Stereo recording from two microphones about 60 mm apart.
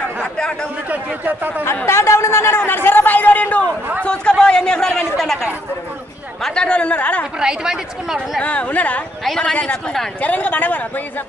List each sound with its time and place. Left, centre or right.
0.4 s speech: centre
0.8 s speech: right
1.9 s a man's voice: left
4.0 s speech: centre
6.4 s speech: centre
7.3 s speech: centre
8.4 s speech: left